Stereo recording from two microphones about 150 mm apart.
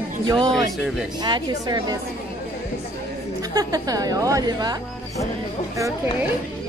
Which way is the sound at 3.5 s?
25° right (ahead or behind).